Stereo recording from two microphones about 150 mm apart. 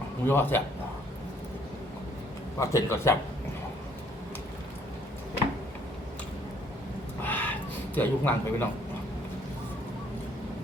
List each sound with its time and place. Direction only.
0.3 s speech: 15° left (ahead or behind)
2.6 s a man's voice: 20° left (ahead or behind)
7.3 s a sound: 10° left (ahead or behind)
7.9 s speech: 10° left (ahead or behind)